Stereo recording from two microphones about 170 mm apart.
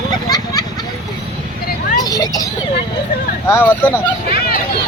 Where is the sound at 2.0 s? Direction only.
20° left (ahead or behind).